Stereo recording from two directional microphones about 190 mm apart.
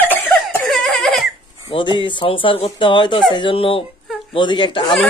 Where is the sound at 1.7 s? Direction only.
25° left (ahead or behind).